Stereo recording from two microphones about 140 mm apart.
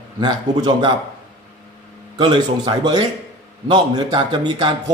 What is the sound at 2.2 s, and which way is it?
A man's voice, 35° right (ahead or behind).